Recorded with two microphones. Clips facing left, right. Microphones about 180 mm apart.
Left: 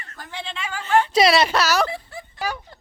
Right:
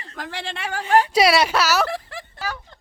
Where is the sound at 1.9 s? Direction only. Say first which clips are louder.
Right 3 dB; 90° right.